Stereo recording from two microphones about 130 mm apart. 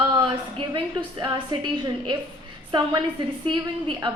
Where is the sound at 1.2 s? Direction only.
35° right (ahead or behind).